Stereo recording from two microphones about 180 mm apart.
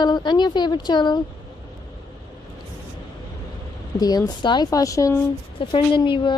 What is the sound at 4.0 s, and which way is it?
Speech, 20° left (ahead or behind).